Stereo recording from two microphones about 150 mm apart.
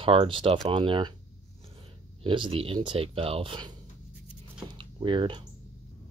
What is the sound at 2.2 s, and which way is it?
Speech, 35° right (ahead or behind).